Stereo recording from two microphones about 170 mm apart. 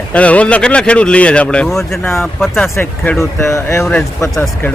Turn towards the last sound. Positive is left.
turn(degrees=5)  # may be behind; listen again after turning